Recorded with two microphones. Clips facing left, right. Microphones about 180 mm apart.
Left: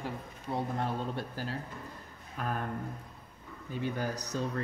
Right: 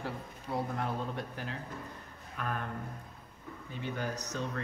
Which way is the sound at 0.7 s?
30° left (ahead or behind).